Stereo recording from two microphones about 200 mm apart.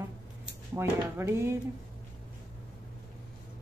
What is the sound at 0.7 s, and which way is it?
Speech, 10° right (ahead or behind).